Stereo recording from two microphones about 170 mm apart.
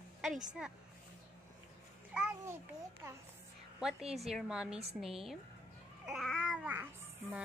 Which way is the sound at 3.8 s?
5° right (ahead or behind).